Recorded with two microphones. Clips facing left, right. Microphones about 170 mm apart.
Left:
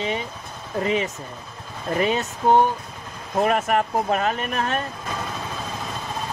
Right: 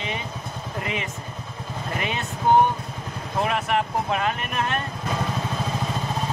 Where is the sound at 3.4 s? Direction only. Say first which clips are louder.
Left 4 dB; 45° left (ahead or behind).